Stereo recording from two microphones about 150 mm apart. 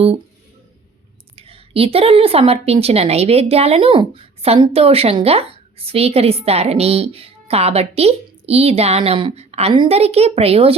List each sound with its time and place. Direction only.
1.4 s a woman's voice: 40° right (ahead or behind)